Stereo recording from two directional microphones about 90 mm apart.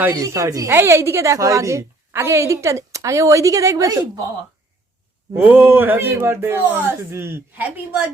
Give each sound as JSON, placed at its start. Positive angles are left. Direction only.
{"t": 0.1, "sound": "a woman's voice", "side_deg": -40}
{"t": 5.3, "sound": "speech", "side_deg": -20}